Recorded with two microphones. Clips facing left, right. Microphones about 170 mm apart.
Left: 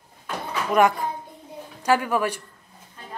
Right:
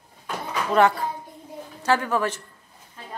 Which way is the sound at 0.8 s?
15° left (ahead or behind).